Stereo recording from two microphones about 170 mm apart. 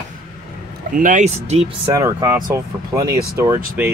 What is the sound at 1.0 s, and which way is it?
Speech, 50° right (ahead or behind).